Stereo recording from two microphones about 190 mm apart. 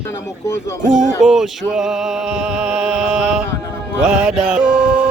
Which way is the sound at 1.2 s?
Centre (ahead or behind).